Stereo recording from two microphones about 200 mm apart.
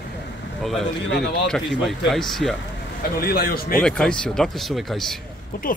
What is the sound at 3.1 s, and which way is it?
Speech, 50° left (ahead or behind).